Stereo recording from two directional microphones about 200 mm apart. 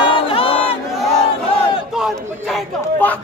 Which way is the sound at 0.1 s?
25° left (ahead or behind).